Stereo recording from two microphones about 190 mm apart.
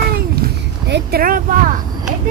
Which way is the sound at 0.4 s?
60° right (ahead or behind).